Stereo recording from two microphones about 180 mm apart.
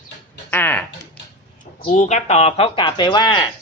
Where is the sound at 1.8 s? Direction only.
50° left (ahead or behind); by 3.5 s 25° left (ahead or behind).